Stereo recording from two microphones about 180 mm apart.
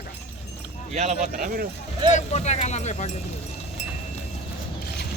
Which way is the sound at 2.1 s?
40° left (ahead or behind).